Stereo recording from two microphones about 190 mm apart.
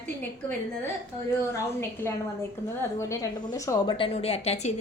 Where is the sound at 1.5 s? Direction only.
15° left (ahead or behind).